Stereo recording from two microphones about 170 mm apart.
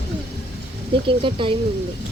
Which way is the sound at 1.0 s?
30° right (ahead or behind).